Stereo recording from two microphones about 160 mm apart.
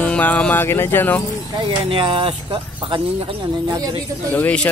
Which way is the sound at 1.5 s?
35° right (ahead or behind).